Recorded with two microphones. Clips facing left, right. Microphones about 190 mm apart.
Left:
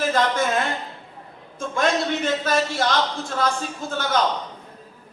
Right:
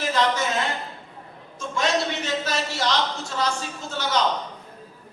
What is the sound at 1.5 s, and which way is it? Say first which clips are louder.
A man's voice: left 2 dB; 55° left (ahead or behind).